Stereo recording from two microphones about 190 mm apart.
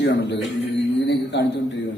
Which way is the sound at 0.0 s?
65° left (ahead or behind).